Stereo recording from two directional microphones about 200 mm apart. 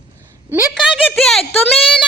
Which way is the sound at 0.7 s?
Centre (ahead or behind).